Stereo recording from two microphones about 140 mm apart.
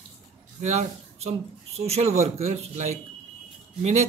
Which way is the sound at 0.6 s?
50° right (ahead or behind).